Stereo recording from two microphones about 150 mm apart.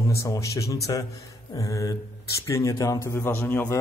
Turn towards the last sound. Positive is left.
turn(degrees=15)  # may be behind; listen again after turning